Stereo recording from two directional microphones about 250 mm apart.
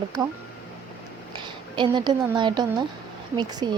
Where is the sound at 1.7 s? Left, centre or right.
Centre.